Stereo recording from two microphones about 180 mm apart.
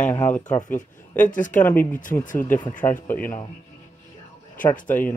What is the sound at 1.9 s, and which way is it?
Speech, 45° left (ahead or behind).